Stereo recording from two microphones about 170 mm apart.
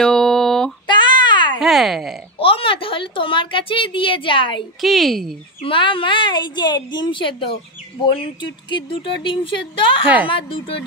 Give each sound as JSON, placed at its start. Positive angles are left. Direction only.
{"t": 0.0, "sound": "a sound", "side_deg": 5}
{"t": 0.8, "sound": "child singing", "side_deg": 25}
{"t": 1.6, "sound": "speech", "side_deg": 0}
{"t": 2.3, "sound": "a woman's voice", "side_deg": 30}
{"t": 4.8, "sound": "speech", "side_deg": 0}
{"t": 5.6, "sound": "a woman's voice", "side_deg": 30}